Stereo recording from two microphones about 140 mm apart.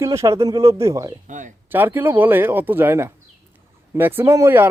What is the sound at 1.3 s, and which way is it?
Speech, 65° right (ahead or behind).